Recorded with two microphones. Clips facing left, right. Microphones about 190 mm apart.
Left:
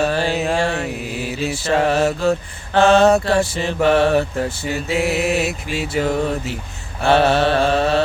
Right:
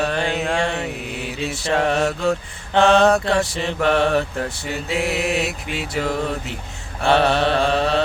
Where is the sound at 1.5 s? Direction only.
Centre (ahead or behind).